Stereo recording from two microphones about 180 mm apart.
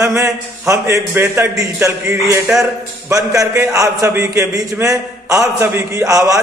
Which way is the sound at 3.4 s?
15° right (ahead or behind).